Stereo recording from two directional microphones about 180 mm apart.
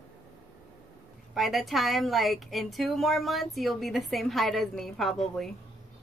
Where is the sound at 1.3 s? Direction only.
Centre (ahead or behind).